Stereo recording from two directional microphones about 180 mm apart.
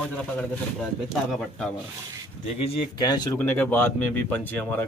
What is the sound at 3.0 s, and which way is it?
Speech, 20° left (ahead or behind).